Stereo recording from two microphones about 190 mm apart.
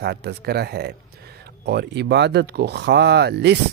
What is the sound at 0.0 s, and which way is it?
Speech, 60° right (ahead or behind).